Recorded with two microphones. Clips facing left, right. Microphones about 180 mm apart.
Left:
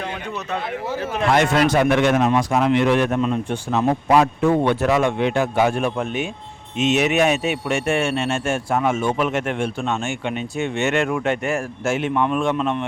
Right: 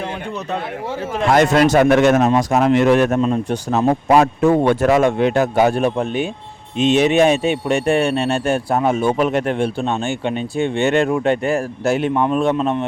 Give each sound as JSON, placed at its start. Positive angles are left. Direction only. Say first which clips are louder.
{"t": 1.3, "sound": "a man's voice", "louder": "right 4 dB", "side_deg": -40}